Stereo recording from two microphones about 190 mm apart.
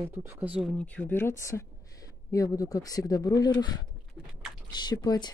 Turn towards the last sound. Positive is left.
turn(degrees=20)  # may be behind; listen again after turning